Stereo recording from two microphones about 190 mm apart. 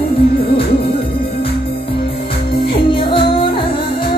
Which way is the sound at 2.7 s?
25° left (ahead or behind).